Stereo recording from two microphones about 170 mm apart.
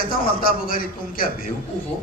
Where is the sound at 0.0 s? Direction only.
55° left (ahead or behind).